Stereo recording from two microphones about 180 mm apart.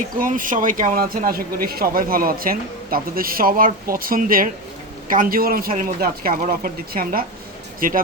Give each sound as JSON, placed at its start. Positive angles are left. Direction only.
{"t": 0.2, "sound": "speech", "side_deg": -50}